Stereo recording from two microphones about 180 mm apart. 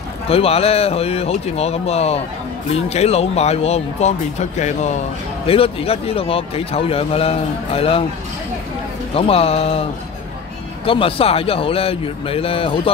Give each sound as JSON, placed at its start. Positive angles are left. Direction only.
{"t": 0.3, "sound": "a man's voice", "side_deg": 35}
{"t": 9.1, "sound": "a man's voice", "side_deg": 35}
{"t": 10.9, "sound": "a man's voice", "side_deg": 30}